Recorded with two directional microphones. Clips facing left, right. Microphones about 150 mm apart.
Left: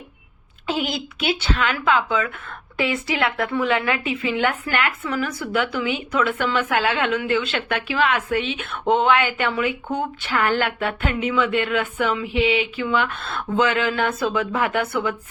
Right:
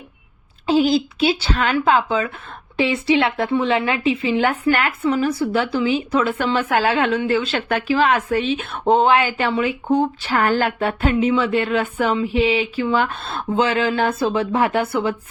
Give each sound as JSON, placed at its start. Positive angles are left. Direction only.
{"t": 0.7, "sound": "a woman's voice", "side_deg": -30}